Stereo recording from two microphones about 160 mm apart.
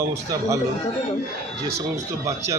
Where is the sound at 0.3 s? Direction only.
20° right (ahead or behind).